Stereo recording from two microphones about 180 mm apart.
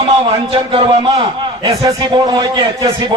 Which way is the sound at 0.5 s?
30° right (ahead or behind).